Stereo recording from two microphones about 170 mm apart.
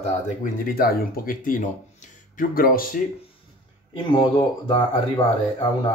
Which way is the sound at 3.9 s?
30° left (ahead or behind).